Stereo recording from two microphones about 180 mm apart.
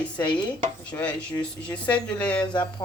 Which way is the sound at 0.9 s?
5° left (ahead or behind).